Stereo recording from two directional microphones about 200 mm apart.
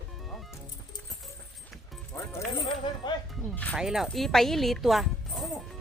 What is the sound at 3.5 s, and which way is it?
Speech, 5° left (ahead or behind).